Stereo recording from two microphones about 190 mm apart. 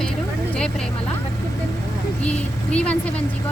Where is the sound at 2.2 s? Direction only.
5° left (ahead or behind).